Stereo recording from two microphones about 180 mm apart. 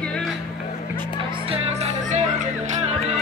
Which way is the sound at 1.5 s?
35° right (ahead or behind).